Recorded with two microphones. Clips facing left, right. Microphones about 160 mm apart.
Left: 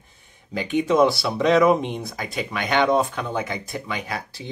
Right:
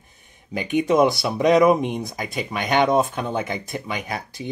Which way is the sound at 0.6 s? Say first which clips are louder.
Even; 15° right (ahead or behind).